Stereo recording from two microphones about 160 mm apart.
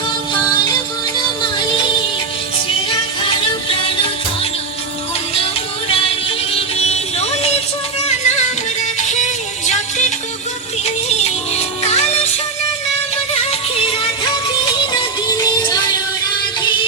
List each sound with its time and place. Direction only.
0.6 s music: 25° left (ahead or behind)
3.2 s music: 35° left (ahead or behind)
5.9 s music: 35° left (ahead or behind)
13.3 s music: 40° left (ahead or behind)
13.9 s music: 30° left (ahead or behind)
15.5 s music: 25° left (ahead or behind)